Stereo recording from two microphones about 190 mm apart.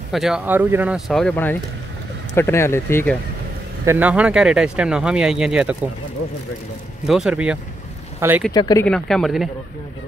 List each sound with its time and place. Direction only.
0.1 s speech: centre (ahead or behind)
3.8 s speech: 10° right (ahead or behind)
7.1 s speech: 5° right (ahead or behind)
8.5 s speech: 20° left (ahead or behind)
8.8 s speech: 5° left (ahead or behind)